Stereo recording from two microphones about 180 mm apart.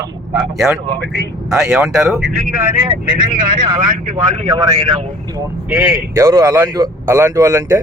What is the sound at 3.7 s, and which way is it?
Speech, 25° right (ahead or behind).